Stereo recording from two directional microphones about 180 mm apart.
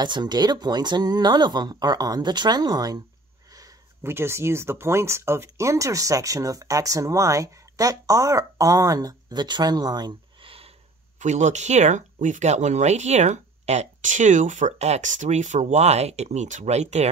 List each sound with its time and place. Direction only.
0.0 s speech: 25° right (ahead or behind)
11.1 s speech: 40° right (ahead or behind)